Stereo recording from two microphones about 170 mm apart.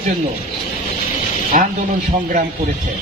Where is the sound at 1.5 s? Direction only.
50° right (ahead or behind).